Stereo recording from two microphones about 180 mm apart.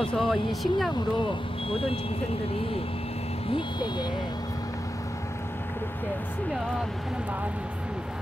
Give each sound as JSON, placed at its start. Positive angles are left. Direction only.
{"t": 0.0, "sound": "speech", "side_deg": 0}
{"t": 1.7, "sound": "speech", "side_deg": 30}
{"t": 3.5, "sound": "speech", "side_deg": 25}